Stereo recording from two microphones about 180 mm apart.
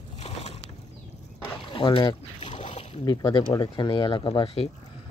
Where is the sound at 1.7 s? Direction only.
30° left (ahead or behind).